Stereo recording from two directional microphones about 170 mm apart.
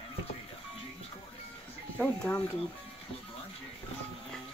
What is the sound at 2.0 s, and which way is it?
Speech, 5° left (ahead or behind).